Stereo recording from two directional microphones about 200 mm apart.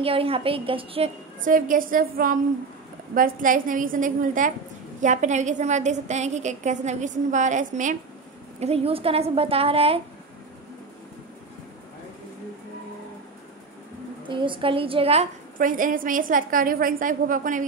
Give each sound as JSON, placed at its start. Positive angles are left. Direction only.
{"t": 0.0, "sound": "a woman's voice", "side_deg": -30}
{"t": 1.4, "sound": "a woman's voice", "side_deg": -40}
{"t": 14.2, "sound": "a woman's voice", "side_deg": -25}
{"t": 15.5, "sound": "a woman's voice", "side_deg": -40}